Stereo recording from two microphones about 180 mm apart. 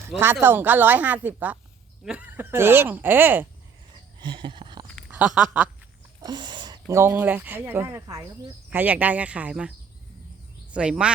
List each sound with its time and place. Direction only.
0.4 s speech: 10° right (ahead or behind)
4.2 s a sound: 25° right (ahead or behind)
5.1 s speech: 5° right (ahead or behind)
6.2 s speech: 25° right (ahead or behind); by 9.7 s 5° right (ahead or behind)
10.8 s speech: 5° right (ahead or behind)